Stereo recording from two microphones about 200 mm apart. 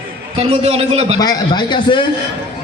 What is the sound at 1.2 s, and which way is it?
Speech, 20° left (ahead or behind).